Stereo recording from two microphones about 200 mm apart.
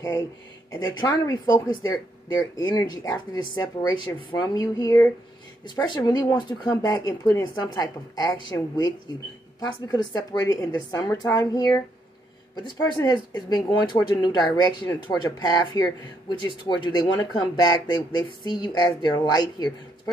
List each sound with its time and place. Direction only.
0.7 s speech: 15° left (ahead or behind)